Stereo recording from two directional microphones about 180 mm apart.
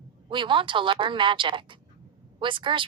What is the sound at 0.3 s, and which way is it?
A woman's voice, 25° right (ahead or behind).